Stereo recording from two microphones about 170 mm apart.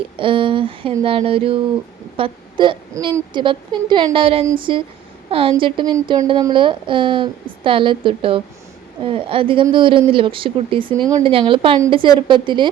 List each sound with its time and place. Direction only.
0.2 s speech: 30° right (ahead or behind)